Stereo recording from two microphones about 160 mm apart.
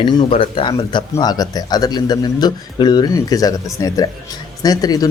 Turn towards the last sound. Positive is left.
turn(degrees=25)  # may be behind; listen again after turning